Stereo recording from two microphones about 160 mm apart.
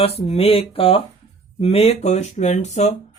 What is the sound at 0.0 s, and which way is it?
Speech, 40° left (ahead or behind).